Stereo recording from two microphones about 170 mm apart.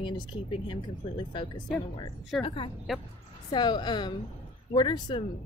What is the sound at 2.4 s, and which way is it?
A woman's voice, 30° left (ahead or behind).